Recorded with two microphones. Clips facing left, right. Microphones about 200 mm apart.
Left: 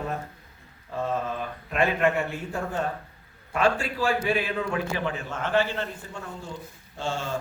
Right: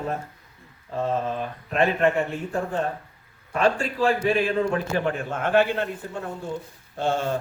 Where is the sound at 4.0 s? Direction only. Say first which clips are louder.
Right 4 dB; 30° right (ahead or behind).